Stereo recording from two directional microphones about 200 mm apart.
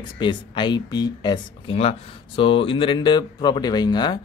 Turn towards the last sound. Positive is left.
turn(degrees=20)  # may be behind; listen again after turning